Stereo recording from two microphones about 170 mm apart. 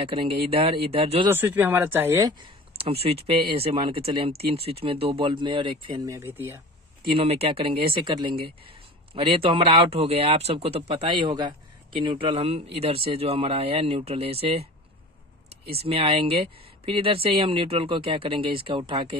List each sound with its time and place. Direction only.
0.0 s speech: 35° right (ahead or behind)
1.3 s speech: 10° right (ahead or behind)
2.4 s speech: 35° right (ahead or behind)
6.0 s speech: 15° right (ahead or behind)
7.1 s speech: 35° right (ahead or behind)
15.8 s speech: 35° right (ahead or behind)